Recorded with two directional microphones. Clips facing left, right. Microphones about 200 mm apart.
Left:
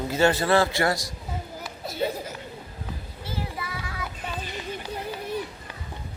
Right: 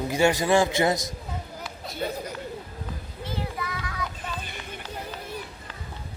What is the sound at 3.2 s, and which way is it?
Child singing, 10° left (ahead or behind).